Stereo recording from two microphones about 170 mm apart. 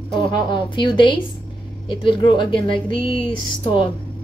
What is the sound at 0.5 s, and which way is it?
A woman's voice, 30° left (ahead or behind).